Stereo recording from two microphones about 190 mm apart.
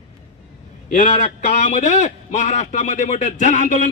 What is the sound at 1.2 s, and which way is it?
A man's voice, 40° left (ahead or behind).